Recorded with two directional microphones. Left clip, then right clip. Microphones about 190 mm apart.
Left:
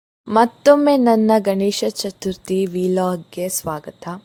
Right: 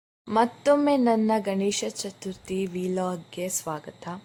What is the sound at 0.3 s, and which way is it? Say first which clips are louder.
Speech: left 9 dB; 40° left (ahead or behind).